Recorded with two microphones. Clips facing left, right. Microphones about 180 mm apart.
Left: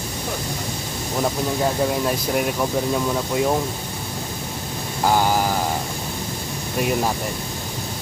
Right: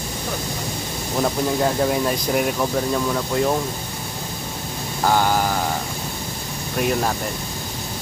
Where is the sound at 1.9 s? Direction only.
Centre (ahead or behind).